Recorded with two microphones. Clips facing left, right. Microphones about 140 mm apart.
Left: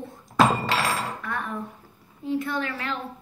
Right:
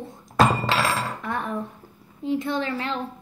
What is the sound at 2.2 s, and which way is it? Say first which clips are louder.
Speech: right 2 dB; 25° right (ahead or behind).